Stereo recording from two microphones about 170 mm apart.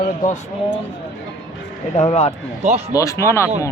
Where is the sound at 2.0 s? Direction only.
40° left (ahead or behind).